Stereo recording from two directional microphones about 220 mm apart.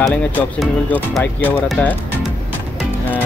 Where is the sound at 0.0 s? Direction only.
5° left (ahead or behind).